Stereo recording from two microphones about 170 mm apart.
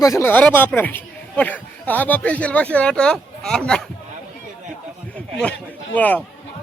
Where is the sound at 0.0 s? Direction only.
15° left (ahead or behind).